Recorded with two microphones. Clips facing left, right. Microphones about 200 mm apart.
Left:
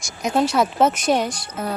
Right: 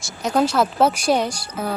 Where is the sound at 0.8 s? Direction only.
10° right (ahead or behind).